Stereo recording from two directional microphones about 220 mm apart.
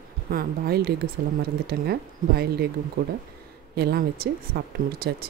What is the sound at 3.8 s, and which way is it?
Speech, 45° right (ahead or behind).